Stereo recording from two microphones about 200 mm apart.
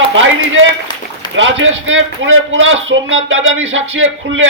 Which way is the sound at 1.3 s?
70° right (ahead or behind).